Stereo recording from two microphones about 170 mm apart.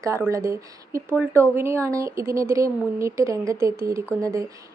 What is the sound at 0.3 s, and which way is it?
Speech, 20° right (ahead or behind).